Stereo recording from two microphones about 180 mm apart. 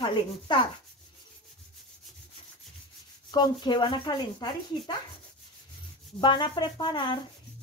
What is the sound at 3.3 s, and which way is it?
Speech, 25° left (ahead or behind).